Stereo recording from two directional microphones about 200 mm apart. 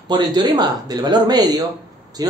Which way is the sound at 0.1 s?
20° right (ahead or behind).